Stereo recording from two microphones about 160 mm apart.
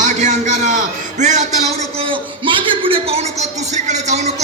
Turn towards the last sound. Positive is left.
turn(degrees=-45)  # may be behind; listen again after turning